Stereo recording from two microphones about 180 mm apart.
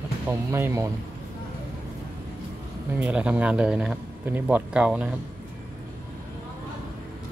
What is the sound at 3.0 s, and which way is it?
A man's voice, 5° right (ahead or behind).